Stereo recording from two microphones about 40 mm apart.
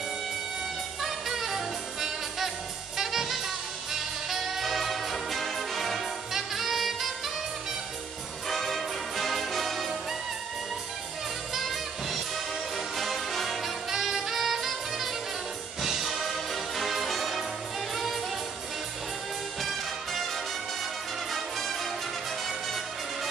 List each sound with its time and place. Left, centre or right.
1.0 s music: centre
8.5 s music: centre
11.5 s music: centre
19.6 s music: centre
21.3 s music: centre